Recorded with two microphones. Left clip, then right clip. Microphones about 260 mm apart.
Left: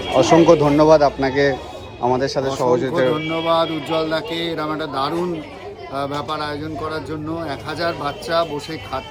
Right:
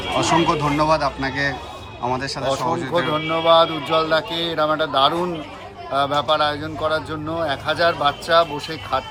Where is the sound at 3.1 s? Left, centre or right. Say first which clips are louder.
Right 3 dB; right.